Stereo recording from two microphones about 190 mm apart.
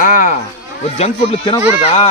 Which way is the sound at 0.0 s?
45° left (ahead or behind).